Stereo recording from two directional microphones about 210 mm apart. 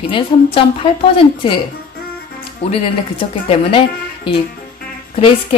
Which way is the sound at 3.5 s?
25° left (ahead or behind).